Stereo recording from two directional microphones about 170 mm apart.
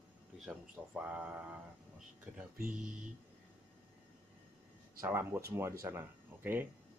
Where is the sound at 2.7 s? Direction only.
50° right (ahead or behind).